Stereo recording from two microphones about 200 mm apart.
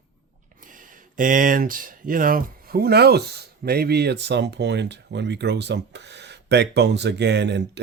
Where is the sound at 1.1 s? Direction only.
40° right (ahead or behind).